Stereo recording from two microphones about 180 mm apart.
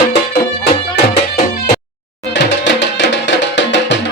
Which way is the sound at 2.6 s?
85° left.